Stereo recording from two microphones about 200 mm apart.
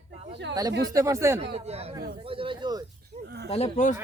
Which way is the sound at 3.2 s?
55° right (ahead or behind).